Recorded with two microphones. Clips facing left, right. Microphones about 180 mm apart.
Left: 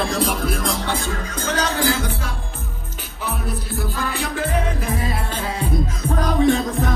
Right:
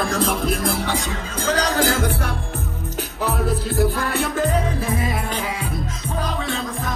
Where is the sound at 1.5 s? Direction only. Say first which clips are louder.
Right 2 dB; 35° right (ahead or behind).